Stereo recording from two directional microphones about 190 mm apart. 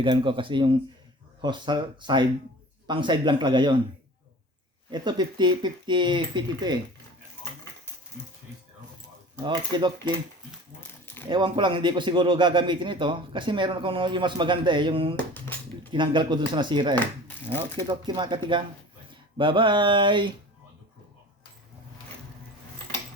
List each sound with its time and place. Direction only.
0.0 s speech: 25° right (ahead or behind)
4.9 s speech: 25° right (ahead or behind)
9.4 s speech: 25° right (ahead or behind)
11.0 s a sound: 10° left (ahead or behind)
11.3 s speech: 25° right (ahead or behind)
15.1 s speech: 10° left (ahead or behind)
15.9 s speech: 25° right (ahead or behind)
17.0 s speech: 10° left (ahead or behind)
17.8 s speech: 25° right (ahead or behind)
19.4 s speech: 25° right (ahead or behind)